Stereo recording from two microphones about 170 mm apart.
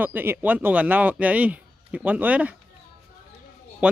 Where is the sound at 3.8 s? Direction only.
5° right (ahead or behind).